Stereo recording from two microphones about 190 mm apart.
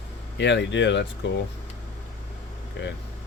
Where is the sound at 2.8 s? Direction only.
70° left (ahead or behind).